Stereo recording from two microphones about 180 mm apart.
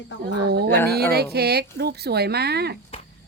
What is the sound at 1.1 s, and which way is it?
Speech, 60° right (ahead or behind).